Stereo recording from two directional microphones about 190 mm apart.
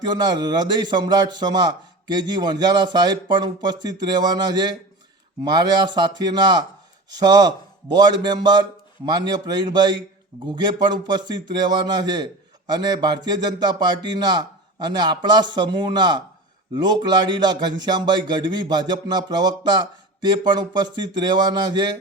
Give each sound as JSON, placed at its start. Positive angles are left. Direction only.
{"t": 0.0, "sound": "a man's voice", "side_deg": -20}